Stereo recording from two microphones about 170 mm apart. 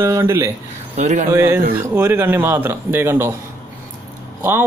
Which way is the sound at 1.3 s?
15° right (ahead or behind).